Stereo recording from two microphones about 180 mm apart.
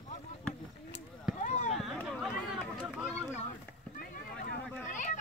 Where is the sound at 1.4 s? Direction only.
40° left (ahead or behind).